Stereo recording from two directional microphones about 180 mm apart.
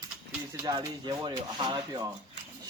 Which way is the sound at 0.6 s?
20° right (ahead or behind).